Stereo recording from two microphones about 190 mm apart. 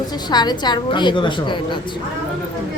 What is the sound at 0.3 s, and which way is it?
A woman's voice, 20° left (ahead or behind).